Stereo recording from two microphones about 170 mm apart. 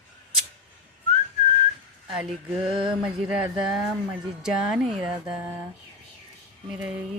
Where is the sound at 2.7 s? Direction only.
30° right (ahead or behind).